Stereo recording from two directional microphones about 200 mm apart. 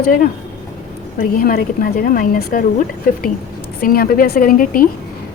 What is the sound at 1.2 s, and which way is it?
A woman's voice, 45° left (ahead or behind).